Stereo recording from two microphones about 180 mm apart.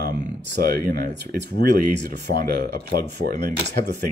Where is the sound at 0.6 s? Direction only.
55° right (ahead or behind).